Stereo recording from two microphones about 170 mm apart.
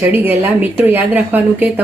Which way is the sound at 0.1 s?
10° right (ahead or behind).